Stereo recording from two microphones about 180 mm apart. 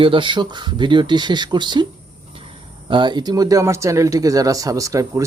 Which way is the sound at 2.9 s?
25° right (ahead or behind).